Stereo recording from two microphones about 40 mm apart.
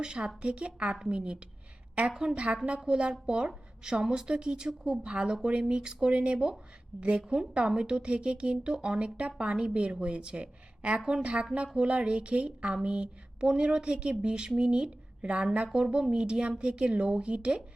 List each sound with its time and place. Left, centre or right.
0.0 s speech: right
4.0 s speech: centre